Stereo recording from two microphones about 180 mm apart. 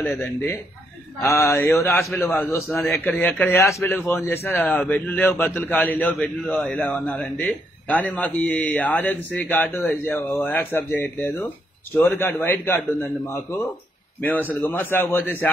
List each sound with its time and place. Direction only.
0.1 s a man's voice: 10° left (ahead or behind)